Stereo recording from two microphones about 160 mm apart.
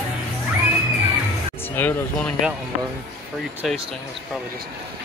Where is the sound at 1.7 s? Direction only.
10° left (ahead or behind).